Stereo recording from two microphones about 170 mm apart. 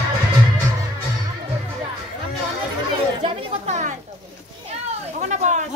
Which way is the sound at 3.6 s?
40° right (ahead or behind).